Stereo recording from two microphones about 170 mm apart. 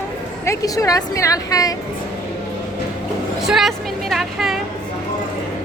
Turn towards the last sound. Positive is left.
turn(degrees=0)  # may be behind; listen again after turning